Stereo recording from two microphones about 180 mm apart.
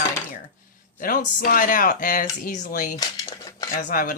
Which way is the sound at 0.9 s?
50° left (ahead or behind).